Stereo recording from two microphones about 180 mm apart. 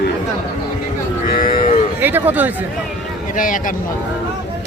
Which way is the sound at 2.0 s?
10° right (ahead or behind).